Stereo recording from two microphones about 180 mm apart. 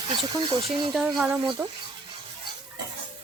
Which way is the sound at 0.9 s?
5° right (ahead or behind).